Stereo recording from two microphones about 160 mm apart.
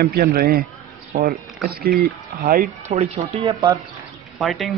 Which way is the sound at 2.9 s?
35° right (ahead or behind).